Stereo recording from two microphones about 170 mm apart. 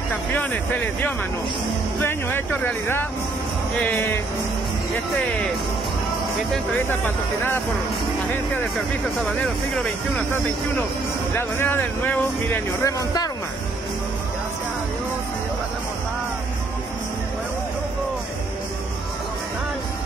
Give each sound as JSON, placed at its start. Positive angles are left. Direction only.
{"t": 0.1, "sound": "speech", "side_deg": 10}
{"t": 2.0, "sound": "speech", "side_deg": 10}
{"t": 9.8, "sound": "speech", "side_deg": 10}
{"t": 12.8, "sound": "speech", "side_deg": 20}